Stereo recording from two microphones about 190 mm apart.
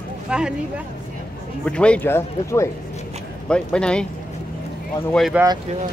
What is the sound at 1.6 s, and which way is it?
Speech, 5° left (ahead or behind).